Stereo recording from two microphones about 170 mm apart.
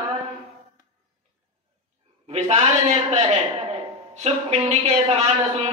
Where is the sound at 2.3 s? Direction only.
40° right (ahead or behind).